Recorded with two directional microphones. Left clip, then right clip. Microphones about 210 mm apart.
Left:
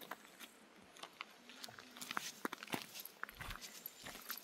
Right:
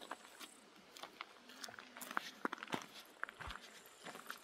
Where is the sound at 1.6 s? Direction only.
40° right (ahead or behind).